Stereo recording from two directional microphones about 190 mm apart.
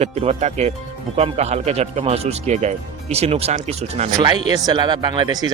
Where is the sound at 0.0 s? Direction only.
35° right (ahead or behind).